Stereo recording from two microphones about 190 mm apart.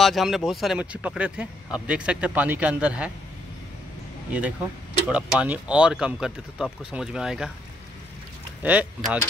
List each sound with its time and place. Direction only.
0.0 s speech: centre (ahead or behind)
4.3 s speech: 5° right (ahead or behind)
8.6 s speech: 5° right (ahead or behind)